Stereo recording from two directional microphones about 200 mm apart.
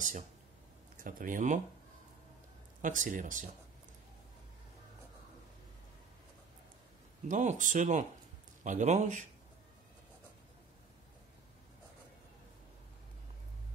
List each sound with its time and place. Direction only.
0.9 s speech: 45° right (ahead or behind)
2.8 s speech: 40° right (ahead or behind)
7.2 s speech: 40° right (ahead or behind)